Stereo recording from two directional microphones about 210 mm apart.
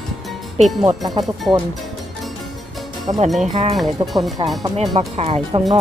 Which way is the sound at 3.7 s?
Centre (ahead or behind).